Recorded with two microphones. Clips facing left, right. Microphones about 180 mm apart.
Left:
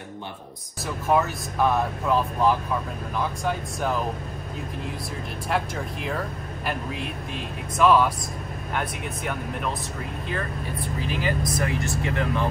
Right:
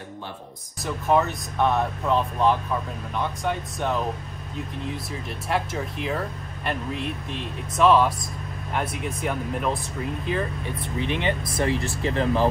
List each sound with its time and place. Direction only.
0.8 s speech: centre (ahead or behind)
5.5 s speech: centre (ahead or behind)
10.8 s speech: 25° right (ahead or behind)